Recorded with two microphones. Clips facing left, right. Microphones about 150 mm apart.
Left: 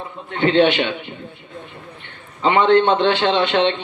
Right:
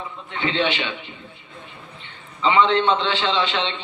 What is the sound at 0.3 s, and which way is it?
Speech, 50° left (ahead or behind).